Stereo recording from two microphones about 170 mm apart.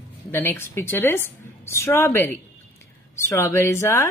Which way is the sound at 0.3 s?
15° left (ahead or behind).